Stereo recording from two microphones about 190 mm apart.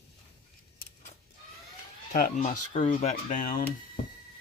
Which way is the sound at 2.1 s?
45° left (ahead or behind).